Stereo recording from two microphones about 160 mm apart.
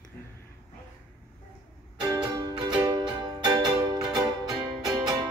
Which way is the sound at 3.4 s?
25° right (ahead or behind).